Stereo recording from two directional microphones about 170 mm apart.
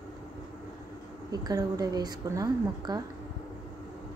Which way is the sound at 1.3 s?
25° right (ahead or behind).